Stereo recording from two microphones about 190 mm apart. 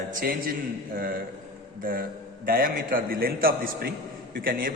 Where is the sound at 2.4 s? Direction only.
50° right (ahead or behind).